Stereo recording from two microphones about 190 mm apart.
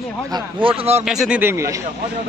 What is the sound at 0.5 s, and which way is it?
Speech, 30° right (ahead or behind).